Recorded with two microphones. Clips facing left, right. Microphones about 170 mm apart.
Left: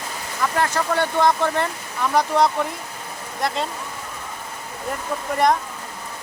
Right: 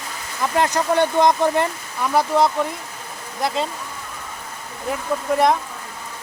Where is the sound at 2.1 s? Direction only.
Centre (ahead or behind).